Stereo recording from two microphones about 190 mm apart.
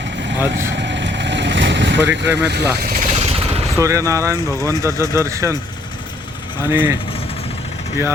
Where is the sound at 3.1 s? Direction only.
30° right (ahead or behind).